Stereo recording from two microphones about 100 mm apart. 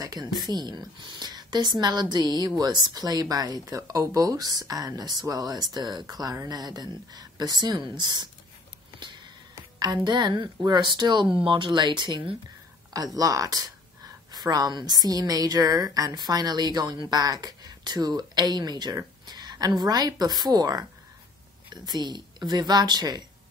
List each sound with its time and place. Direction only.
0.0 s a woman's voice: 40° right (ahead or behind)
9.0 s a sound: 50° right (ahead or behind)
9.6 s a woman's voice: 45° right (ahead or behind)
21.8 s a woman's voice: 45° right (ahead or behind)